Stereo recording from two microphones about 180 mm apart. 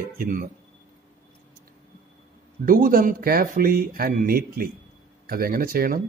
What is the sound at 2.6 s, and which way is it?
Speech, 50° right (ahead or behind).